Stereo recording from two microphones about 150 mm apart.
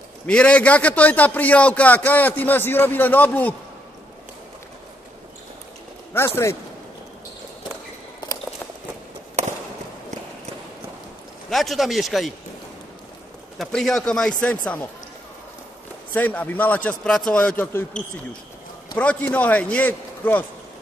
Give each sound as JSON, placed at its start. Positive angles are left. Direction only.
{"t": 0.3, "sound": "a man's voice", "side_deg": 5}
{"t": 6.1, "sound": "a man's voice", "side_deg": 15}
{"t": 11.5, "sound": "speech", "side_deg": 0}
{"t": 13.6, "sound": "a man's voice", "side_deg": 5}
{"t": 16.1, "sound": "a man's voice", "side_deg": 10}
{"t": 18.9, "sound": "a man's voice", "side_deg": 10}